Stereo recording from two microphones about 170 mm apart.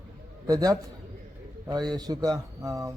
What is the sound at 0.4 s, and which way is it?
A man's voice, 20° right (ahead or behind).